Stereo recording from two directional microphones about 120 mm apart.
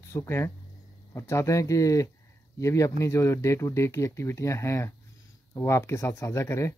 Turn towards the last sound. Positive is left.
turn(degrees=25)  # may be behind; listen again after turning